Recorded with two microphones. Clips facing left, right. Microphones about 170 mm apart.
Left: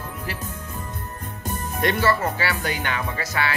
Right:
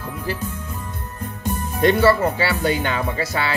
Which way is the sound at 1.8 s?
30° right (ahead or behind).